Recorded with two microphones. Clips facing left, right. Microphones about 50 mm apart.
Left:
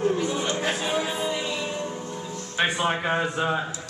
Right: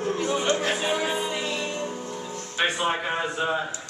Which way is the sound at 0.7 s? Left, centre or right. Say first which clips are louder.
Right 1 dB; centre.